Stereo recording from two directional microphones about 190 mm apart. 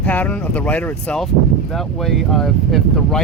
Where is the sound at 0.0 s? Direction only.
10° left (ahead or behind).